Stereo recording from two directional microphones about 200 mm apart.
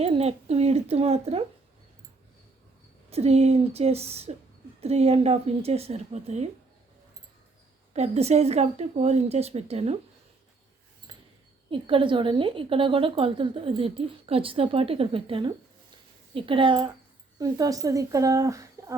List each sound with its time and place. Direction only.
0.0 s speech: 30° right (ahead or behind)
3.1 s speech: 30° right (ahead or behind)
7.9 s speech: 35° right (ahead or behind)
11.7 s a woman's voice: 25° right (ahead or behind)